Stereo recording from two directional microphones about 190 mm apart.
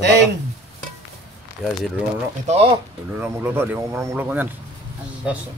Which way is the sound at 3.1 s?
10° right (ahead or behind).